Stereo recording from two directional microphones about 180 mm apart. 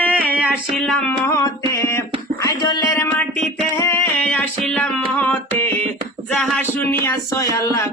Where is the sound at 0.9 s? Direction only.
15° left (ahead or behind).